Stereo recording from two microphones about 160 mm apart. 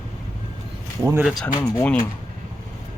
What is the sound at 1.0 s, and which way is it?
Speech, 15° right (ahead or behind).